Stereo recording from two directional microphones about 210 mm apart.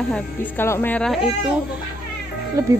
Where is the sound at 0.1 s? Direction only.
10° left (ahead or behind).